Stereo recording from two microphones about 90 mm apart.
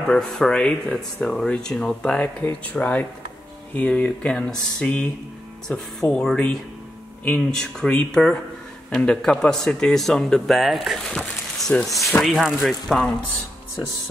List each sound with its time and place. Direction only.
0.1 s speech: 5° left (ahead or behind)
11.1 s speech: 10° left (ahead or behind)
12.2 s speech: centre (ahead or behind)